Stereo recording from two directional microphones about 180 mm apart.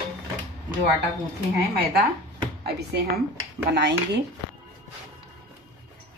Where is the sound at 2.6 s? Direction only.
65° right (ahead or behind).